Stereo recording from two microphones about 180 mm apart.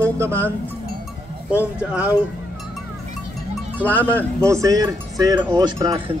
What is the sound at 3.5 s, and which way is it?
A man's voice, 10° right (ahead or behind).